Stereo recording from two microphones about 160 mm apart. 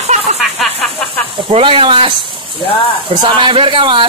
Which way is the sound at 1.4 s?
35° right (ahead or behind).